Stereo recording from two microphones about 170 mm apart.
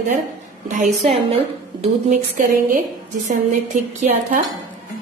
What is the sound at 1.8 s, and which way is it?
A woman's voice, 50° right (ahead or behind).